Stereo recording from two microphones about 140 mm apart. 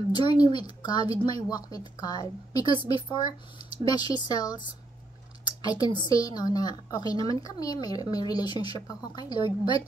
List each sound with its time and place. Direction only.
0.1 s speech: 30° left (ahead or behind)